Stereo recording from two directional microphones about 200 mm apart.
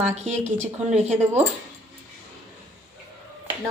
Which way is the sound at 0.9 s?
35° right (ahead or behind).